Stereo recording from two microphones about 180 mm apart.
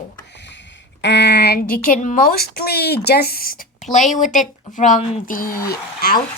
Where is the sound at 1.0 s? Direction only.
70° left (ahead or behind).